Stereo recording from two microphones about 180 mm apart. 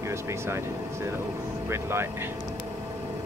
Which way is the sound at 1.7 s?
15° right (ahead or behind).